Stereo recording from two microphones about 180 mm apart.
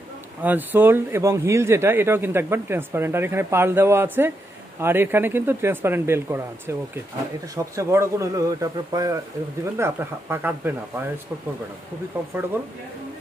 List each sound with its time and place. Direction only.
0.4 s speech: 10° right (ahead or behind)